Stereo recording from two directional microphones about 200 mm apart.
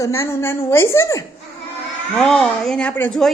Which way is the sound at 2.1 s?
5° left (ahead or behind).